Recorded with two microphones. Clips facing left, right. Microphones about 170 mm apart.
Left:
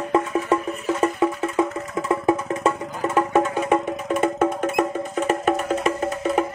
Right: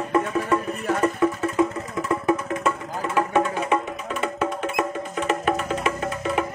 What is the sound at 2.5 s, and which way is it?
Music, 35° left (ahead or behind).